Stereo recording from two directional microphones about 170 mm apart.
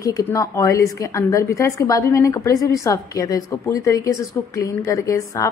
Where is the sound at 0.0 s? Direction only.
20° left (ahead or behind).